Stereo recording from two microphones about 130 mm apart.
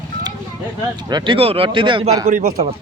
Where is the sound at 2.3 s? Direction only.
65° right (ahead or behind).